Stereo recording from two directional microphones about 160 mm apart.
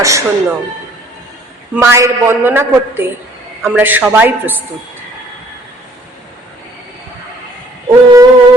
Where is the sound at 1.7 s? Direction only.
15° right (ahead or behind).